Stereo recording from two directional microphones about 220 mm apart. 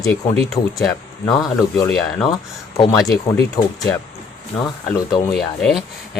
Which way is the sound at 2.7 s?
15° left (ahead or behind).